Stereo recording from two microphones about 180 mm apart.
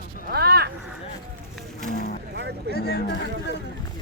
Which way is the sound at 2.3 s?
70° right (ahead or behind).